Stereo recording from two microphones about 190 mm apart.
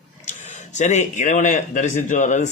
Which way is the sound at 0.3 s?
40° left (ahead or behind).